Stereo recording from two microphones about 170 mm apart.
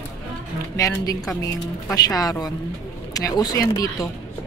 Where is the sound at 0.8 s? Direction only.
20° left (ahead or behind).